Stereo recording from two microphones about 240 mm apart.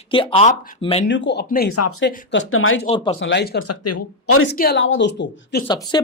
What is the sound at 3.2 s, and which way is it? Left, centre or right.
Speech, left.